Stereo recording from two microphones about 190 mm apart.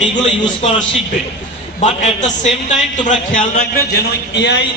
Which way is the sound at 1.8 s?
40° left (ahead or behind).